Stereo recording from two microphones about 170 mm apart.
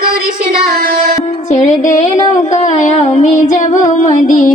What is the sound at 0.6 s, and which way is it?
Music, 60° right (ahead or behind).